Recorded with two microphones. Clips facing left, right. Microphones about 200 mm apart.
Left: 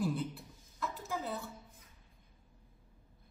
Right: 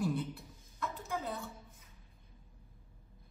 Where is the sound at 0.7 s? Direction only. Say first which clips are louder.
Even; 5° left (ahead or behind).